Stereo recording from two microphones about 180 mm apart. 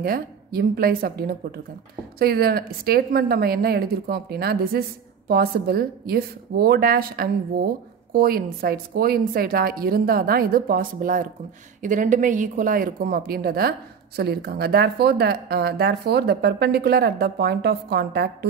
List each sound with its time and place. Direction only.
0.0 s speech: 55° right (ahead or behind)